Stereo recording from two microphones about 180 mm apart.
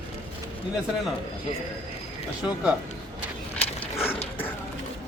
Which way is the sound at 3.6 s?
10° left (ahead or behind).